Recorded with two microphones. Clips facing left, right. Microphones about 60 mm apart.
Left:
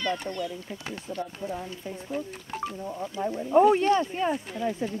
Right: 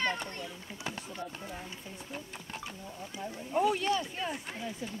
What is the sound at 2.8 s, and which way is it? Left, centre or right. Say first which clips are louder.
Speech: left 11 dB; left.